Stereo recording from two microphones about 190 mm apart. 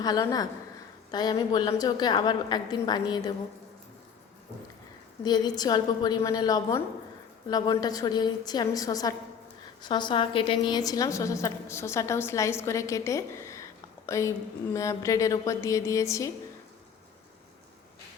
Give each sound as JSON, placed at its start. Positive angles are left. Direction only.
{"t": 0.0, "sound": "a woman's voice", "side_deg": 20}
{"t": 5.2, "sound": "a woman's voice", "side_deg": 20}